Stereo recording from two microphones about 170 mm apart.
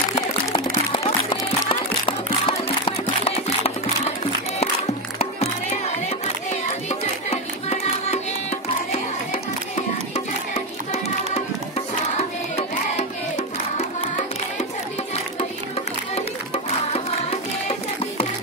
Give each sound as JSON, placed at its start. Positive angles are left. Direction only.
{"t": 0.9, "sound": "music", "side_deg": 25}
{"t": 5.2, "sound": "music", "side_deg": 40}
{"t": 12.2, "sound": "music", "side_deg": 40}
{"t": 16.5, "sound": "music", "side_deg": 35}